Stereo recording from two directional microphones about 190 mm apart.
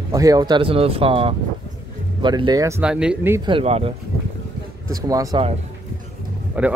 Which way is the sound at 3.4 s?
30° right (ahead or behind).